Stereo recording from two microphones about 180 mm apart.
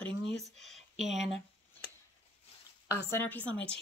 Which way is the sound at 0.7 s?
Centre (ahead or behind).